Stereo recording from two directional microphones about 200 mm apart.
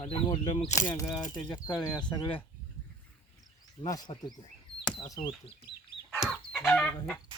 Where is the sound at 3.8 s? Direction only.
20° left (ahead or behind).